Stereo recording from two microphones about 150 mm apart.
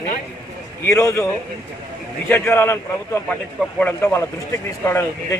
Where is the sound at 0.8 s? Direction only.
20° left (ahead or behind).